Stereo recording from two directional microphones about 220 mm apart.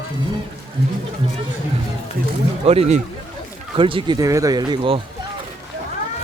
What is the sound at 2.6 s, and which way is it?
Speech, 25° right (ahead or behind).